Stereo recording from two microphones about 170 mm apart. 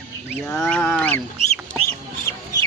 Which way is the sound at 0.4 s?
10° left (ahead or behind).